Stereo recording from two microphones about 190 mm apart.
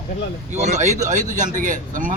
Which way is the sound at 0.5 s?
35° right (ahead or behind).